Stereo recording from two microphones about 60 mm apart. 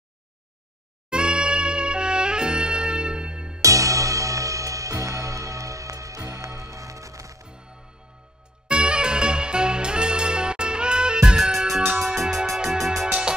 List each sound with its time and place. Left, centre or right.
1.1 s music: centre
3.6 s music: right
8.6 s music: centre
13.1 s music: centre